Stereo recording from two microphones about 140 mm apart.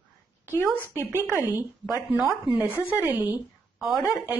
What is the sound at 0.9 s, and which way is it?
Speech, 15° right (ahead or behind).